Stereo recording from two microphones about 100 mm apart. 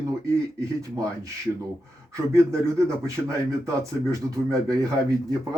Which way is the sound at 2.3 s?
30° right (ahead or behind).